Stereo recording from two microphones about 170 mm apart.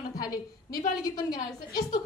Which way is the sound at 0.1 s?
20° left (ahead or behind).